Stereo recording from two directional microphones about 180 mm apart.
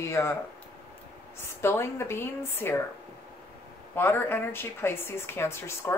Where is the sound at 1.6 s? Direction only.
15° left (ahead or behind).